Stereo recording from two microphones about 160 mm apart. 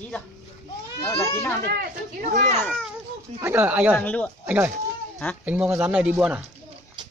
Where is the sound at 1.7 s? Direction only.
65° right (ahead or behind).